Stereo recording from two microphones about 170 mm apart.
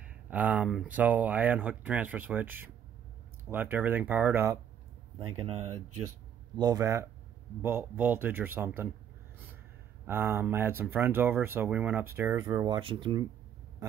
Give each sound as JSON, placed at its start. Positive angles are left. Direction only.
{"t": 0.0, "sound": "speech", "side_deg": -10}
{"t": 6.5, "sound": "speech", "side_deg": -20}
{"t": 10.0, "sound": "speech", "side_deg": -15}
{"t": 12.4, "sound": "speech", "side_deg": -25}